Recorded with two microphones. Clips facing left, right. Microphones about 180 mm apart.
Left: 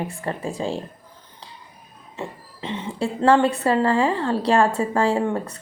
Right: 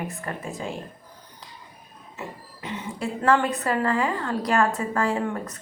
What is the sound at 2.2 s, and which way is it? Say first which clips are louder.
A woman's voice: left 5 dB; 25° left (ahead or behind).